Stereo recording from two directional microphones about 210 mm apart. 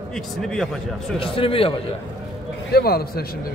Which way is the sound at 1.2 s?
25° left (ahead or behind).